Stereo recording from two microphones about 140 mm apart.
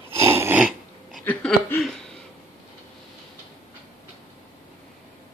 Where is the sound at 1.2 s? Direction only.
10° left (ahead or behind).